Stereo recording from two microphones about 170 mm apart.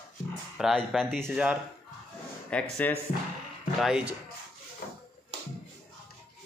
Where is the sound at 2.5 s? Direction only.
5° left (ahead or behind).